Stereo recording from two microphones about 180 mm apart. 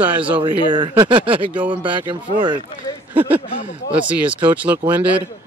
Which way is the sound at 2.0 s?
25° right (ahead or behind).